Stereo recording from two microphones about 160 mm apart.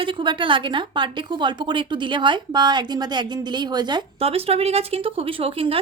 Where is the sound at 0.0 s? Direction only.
30° right (ahead or behind).